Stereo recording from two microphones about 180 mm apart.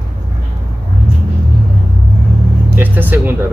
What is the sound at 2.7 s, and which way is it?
Vehicle, 10° right (ahead or behind).